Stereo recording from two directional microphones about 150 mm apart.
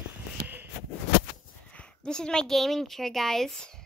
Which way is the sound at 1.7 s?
5° left (ahead or behind).